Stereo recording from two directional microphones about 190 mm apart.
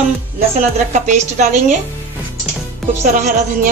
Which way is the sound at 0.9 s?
40° right (ahead or behind).